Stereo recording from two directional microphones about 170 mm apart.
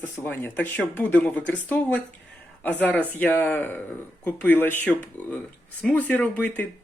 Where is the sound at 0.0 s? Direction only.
10° left (ahead or behind).